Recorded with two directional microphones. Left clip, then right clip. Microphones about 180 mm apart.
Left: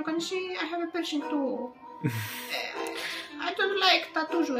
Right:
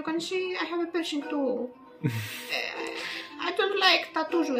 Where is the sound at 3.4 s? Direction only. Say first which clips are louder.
Right 2 dB; 40° right (ahead or behind).